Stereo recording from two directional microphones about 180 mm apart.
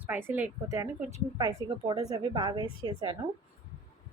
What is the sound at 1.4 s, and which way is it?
A woman's voice, 25° right (ahead or behind).